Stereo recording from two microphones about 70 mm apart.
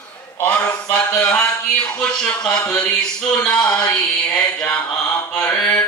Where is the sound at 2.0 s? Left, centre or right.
Centre.